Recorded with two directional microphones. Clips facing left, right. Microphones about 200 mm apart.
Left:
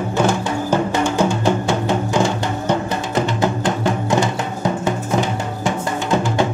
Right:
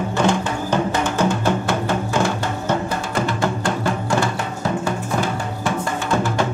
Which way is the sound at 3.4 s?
20° left (ahead or behind).